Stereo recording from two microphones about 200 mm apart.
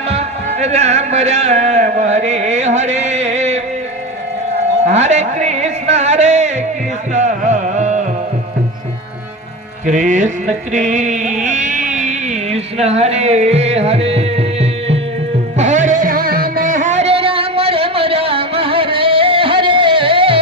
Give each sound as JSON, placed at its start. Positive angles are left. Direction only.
{"t": 0.1, "sound": "speech", "side_deg": -35}
{"t": 4.8, "sound": "music", "side_deg": -35}
{"t": 9.8, "sound": "a sound", "side_deg": -40}
{"t": 15.5, "sound": "music", "side_deg": -35}